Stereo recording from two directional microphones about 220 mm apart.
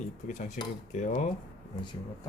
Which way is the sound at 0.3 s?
35° left (ahead or behind).